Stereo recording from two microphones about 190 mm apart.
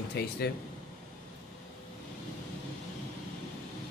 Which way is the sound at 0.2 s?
60° left (ahead or behind).